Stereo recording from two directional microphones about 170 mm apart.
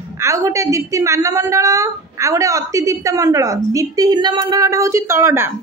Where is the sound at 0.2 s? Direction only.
15° right (ahead or behind).